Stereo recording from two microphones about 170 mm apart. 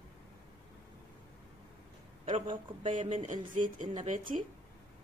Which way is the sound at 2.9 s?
45° right (ahead or behind).